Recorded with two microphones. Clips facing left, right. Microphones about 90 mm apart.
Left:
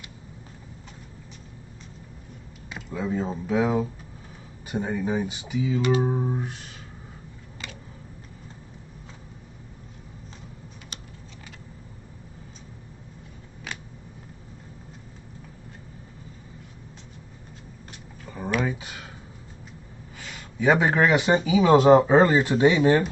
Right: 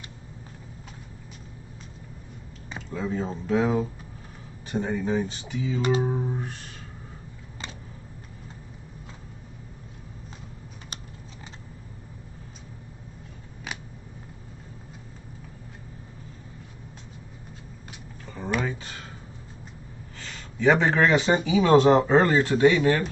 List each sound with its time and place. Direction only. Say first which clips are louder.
2.7 s speech: left 1 dB; 10° left (ahead or behind)
18.2 s a sound: left 2 dB; 10° left (ahead or behind)
20.2 s speech: left 2 dB; 10° left (ahead or behind)